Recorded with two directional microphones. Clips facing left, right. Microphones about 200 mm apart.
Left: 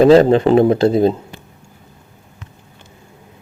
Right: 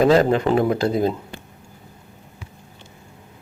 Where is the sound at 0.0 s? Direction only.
25° left (ahead or behind).